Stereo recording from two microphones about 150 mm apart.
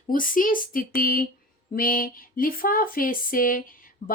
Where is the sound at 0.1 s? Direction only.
65° left (ahead or behind).